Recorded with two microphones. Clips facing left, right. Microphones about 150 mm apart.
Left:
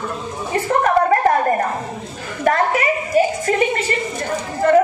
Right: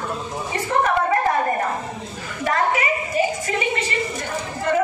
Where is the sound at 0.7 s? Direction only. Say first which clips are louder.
Left 4 dB; 50° left (ahead or behind).